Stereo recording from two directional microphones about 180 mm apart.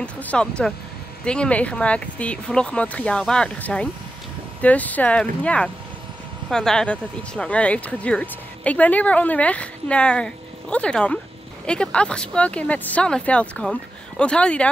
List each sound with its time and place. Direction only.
0.0 s speech: 5° left (ahead or behind)